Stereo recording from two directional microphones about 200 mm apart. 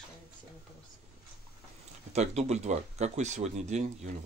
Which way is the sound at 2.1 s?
35° right (ahead or behind).